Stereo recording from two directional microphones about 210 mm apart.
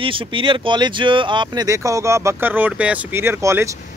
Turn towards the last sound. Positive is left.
turn(degrees=-10)  # may be behind; listen again after turning